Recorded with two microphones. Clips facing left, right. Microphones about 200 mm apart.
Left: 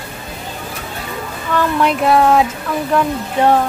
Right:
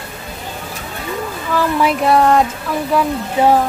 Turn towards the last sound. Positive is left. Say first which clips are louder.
# right 1 dB
turn(degrees=-5)  # may be behind; listen again after turning